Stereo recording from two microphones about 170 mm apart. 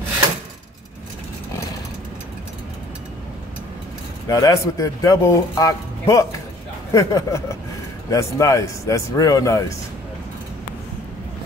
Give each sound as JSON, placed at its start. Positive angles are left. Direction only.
{"t": 4.3, "sound": "speech", "side_deg": 20}